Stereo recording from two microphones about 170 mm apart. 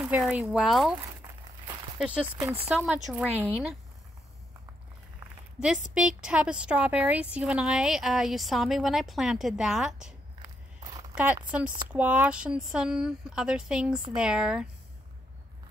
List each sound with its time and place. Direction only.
0.0 s a woman's voice: 5° right (ahead or behind)
2.0 s a woman's voice: 5° right (ahead or behind)
5.6 s a woman's voice: 5° right (ahead or behind)
10.8 s a sound: 20° right (ahead or behind)
11.5 s a woman's voice: 10° right (ahead or behind)